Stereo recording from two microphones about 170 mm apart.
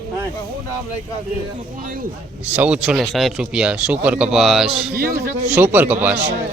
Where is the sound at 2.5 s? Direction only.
5° right (ahead or behind).